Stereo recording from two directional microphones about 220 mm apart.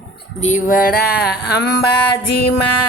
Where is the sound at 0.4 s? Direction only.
35° left (ahead or behind).